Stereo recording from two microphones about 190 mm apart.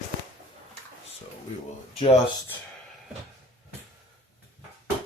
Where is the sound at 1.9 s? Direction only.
35° left (ahead or behind).